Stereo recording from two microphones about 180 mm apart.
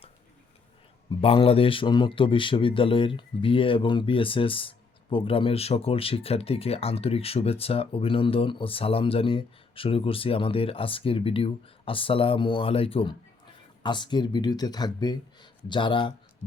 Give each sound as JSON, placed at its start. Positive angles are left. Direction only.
{"t": 1.2, "sound": "a man's voice", "side_deg": 30}